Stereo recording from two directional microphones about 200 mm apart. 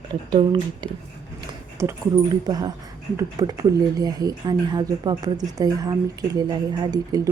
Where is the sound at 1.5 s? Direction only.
15° right (ahead or behind).